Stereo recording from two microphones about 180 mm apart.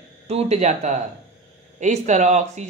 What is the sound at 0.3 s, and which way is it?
Speech, 40° right (ahead or behind).